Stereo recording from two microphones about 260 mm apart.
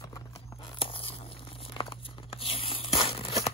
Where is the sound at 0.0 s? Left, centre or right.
Centre.